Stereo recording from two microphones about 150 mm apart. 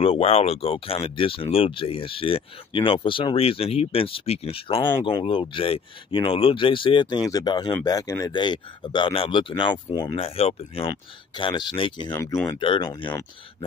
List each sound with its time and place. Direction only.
0.0 s speech: 40° left (ahead or behind)
12.1 s speech: 20° left (ahead or behind)
12.4 s speech: 35° left (ahead or behind)